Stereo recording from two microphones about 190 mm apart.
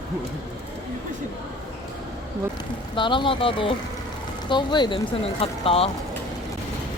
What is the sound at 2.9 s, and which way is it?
Speech, 25° left (ahead or behind).